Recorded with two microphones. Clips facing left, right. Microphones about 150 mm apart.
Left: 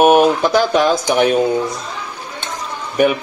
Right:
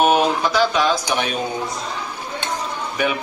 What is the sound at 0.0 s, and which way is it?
Speech, 50° left (ahead or behind).